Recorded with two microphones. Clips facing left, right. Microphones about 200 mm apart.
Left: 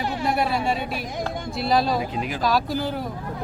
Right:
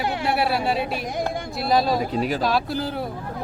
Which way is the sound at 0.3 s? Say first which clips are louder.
Right 1 dB; 5° right (ahead or behind).